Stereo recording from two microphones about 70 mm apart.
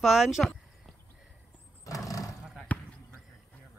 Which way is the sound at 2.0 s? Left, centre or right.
Left.